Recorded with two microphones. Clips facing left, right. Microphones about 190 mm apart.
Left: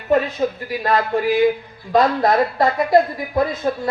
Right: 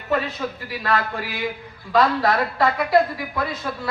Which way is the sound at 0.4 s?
40° left (ahead or behind).